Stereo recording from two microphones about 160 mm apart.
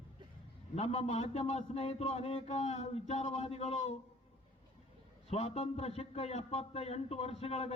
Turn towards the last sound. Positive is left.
turn(degrees=40)  # may be behind; listen again after turning